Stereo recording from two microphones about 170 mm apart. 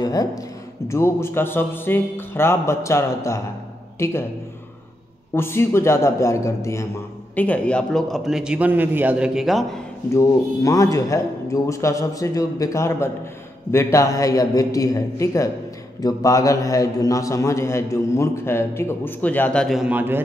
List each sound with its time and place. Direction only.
0.0 s a man's voice: 20° left (ahead or behind)
5.3 s a man's voice: 15° left (ahead or behind)
10.1 s a man's voice: 20° left (ahead or behind); by 20.2 s 10° right (ahead or behind)